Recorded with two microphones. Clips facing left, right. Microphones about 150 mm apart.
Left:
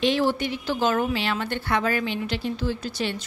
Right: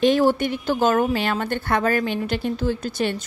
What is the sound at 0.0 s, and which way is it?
A woman's voice, 45° right (ahead or behind).